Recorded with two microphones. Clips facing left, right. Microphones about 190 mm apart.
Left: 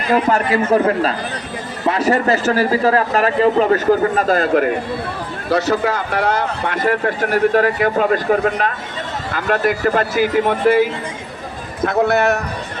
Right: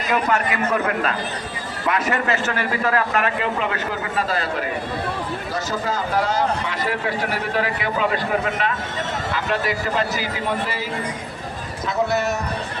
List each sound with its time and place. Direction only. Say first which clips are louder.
0.1 s a man's voice: left 6 dB; 35° left (ahead or behind)
5.5 s a man's voice: left 11 dB; 70° left (ahead or behind)